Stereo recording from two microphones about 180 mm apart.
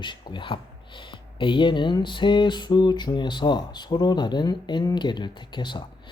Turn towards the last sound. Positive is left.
turn(degrees=25)  # may be behind; listen again after turning